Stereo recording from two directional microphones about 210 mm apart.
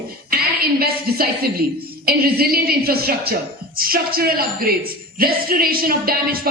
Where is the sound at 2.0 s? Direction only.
45° right (ahead or behind).